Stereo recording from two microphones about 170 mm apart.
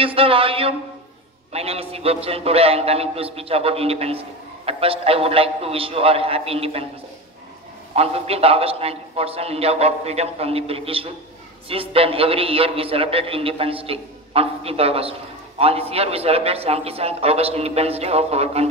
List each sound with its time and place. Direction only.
0.0 s a man's voice: 35° right (ahead or behind)
7.9 s a man's voice: 35° right (ahead or behind)